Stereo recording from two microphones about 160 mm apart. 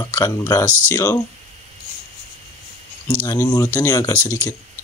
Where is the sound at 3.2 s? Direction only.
20° left (ahead or behind).